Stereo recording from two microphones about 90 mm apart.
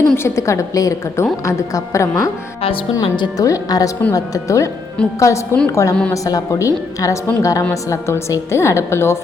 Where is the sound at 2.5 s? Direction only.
90° left.